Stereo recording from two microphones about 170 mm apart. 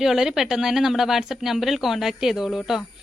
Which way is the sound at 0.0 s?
Centre (ahead or behind).